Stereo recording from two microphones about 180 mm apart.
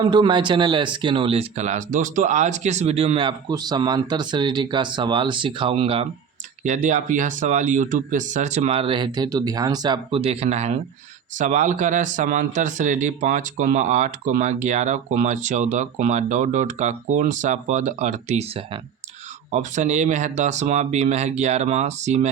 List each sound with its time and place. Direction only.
0.0 s speech: 25° right (ahead or behind)
6.7 s speech: 45° right (ahead or behind)